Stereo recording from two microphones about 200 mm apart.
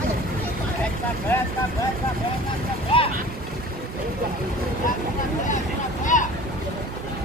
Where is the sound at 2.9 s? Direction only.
30° left (ahead or behind).